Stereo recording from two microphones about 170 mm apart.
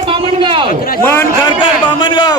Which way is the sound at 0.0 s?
30° right (ahead or behind).